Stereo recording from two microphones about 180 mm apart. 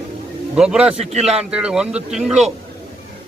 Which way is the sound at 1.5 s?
5° right (ahead or behind).